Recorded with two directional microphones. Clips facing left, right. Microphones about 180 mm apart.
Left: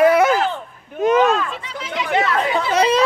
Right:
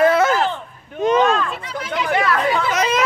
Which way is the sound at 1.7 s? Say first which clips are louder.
Right 3 dB; 45° right (ahead or behind).